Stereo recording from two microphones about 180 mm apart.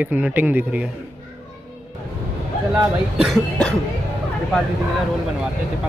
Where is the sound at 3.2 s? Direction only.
5° left (ahead or behind).